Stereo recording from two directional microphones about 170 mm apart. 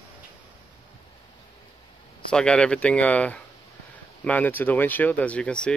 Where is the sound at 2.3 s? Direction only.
5° left (ahead or behind).